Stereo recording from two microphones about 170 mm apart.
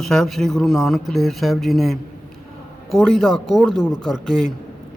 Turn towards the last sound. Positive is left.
turn(degrees=0)  # may be behind; listen again after turning